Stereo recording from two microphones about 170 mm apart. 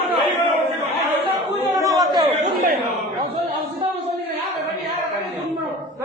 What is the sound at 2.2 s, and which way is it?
Chatter, 50° right (ahead or behind).